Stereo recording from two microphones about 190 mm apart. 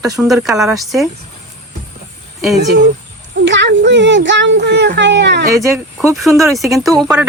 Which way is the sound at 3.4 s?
70° right (ahead or behind).